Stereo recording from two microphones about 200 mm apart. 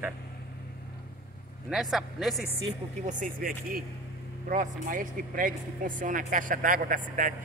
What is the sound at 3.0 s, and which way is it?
Speech, 40° right (ahead or behind).